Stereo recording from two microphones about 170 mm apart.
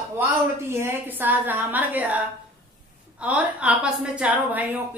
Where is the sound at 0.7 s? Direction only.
15° right (ahead or behind).